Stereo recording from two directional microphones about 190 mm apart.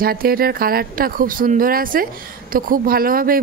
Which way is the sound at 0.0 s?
50° right (ahead or behind).